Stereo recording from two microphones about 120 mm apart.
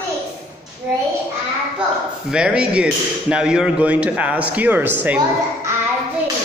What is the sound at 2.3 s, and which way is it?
Speech, 5° right (ahead or behind).